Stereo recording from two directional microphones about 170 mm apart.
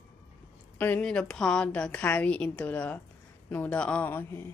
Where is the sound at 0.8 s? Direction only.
10° left (ahead or behind).